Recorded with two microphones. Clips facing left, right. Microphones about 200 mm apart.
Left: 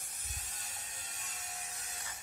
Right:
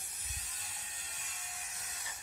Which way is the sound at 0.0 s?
45° left (ahead or behind).